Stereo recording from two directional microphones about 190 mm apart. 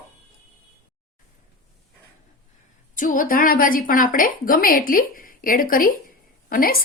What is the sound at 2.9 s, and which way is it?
A woman's voice, 45° left (ahead or behind).